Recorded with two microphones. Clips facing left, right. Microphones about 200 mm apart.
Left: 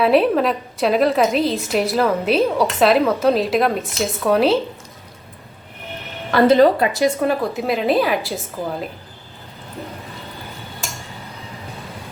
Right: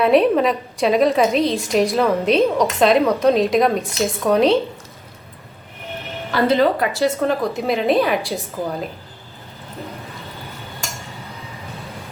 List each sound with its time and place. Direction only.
0.0 s a woman's voice: centre (ahead or behind)
6.3 s a woman's voice: 45° left (ahead or behind)
6.7 s a woman's voice: 15° left (ahead or behind)
7.4 s a woman's voice: centre (ahead or behind)